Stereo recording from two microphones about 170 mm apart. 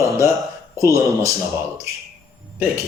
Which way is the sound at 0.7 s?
20° right (ahead or behind).